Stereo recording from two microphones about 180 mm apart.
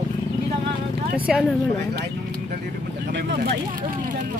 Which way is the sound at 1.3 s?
5° right (ahead or behind).